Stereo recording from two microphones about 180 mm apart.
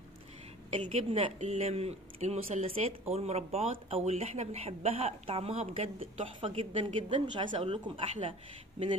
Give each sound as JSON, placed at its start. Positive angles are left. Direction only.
{"t": 0.7, "sound": "speech", "side_deg": -35}